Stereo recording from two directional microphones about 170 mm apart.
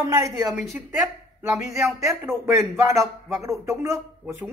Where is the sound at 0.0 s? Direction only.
20° right (ahead or behind).